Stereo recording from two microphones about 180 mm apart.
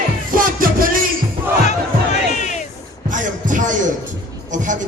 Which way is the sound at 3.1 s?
45° right (ahead or behind).